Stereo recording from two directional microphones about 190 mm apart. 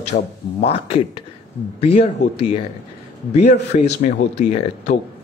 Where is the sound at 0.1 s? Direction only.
35° left (ahead or behind).